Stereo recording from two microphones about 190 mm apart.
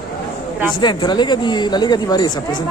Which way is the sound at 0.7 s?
25° left (ahead or behind).